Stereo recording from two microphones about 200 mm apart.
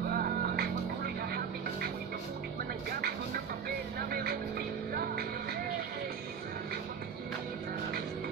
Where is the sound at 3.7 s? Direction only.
50° right (ahead or behind).